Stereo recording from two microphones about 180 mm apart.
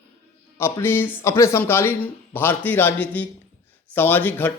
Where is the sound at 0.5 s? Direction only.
15° left (ahead or behind).